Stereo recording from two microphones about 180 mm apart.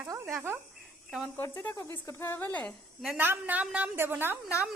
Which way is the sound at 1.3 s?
15° left (ahead or behind).